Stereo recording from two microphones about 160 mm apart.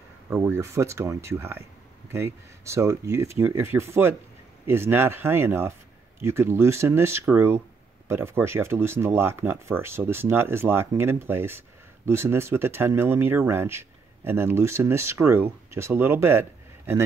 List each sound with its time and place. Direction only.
0.3 s speech: 15° right (ahead or behind)